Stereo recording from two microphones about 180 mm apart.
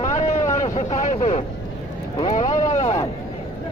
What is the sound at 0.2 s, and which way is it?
Vehicle, 40° left (ahead or behind).